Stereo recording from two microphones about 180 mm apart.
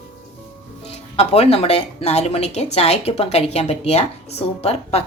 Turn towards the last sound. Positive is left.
turn(degrees=35)  # may be behind; listen again after turning